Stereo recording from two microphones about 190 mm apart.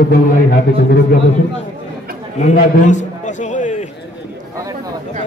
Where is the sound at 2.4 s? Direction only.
40° left (ahead or behind).